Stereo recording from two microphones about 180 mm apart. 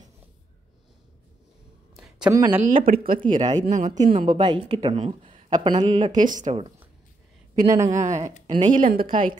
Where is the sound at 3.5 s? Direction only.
45° right (ahead or behind).